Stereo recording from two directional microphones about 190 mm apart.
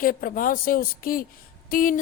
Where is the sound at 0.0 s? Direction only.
50° left (ahead or behind).